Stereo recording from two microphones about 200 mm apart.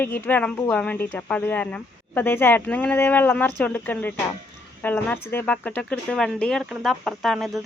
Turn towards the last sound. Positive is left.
turn(degrees=0)  # may be behind; listen again after turning